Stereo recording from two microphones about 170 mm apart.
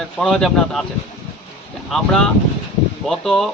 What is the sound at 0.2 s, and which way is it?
Speech, centre (ahead or behind).